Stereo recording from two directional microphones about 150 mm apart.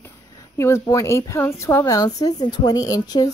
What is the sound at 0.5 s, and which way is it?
A woman's voice, 20° left (ahead or behind).